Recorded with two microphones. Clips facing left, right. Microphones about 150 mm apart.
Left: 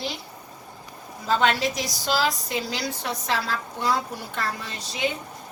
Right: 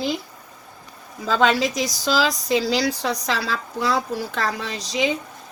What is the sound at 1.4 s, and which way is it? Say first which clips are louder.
Speech: right 7 dB; 90° right.